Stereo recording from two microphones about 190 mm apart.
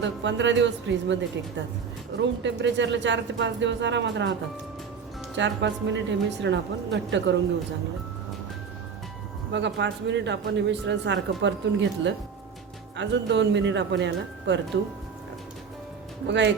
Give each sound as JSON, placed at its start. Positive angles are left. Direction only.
{"t": 0.0, "sound": "speech", "side_deg": -70}
{"t": 5.4, "sound": "speech", "side_deg": -70}
{"t": 9.5, "sound": "speech", "side_deg": -70}
{"t": 16.2, "sound": "speech", "side_deg": -65}